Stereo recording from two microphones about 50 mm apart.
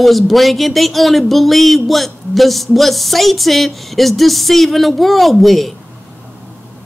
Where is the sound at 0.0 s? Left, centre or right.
Centre.